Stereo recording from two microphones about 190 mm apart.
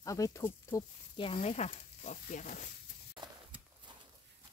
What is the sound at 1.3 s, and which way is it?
Speech, 35° left (ahead or behind).